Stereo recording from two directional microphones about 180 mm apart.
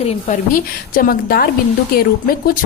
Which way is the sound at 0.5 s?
55° left (ahead or behind).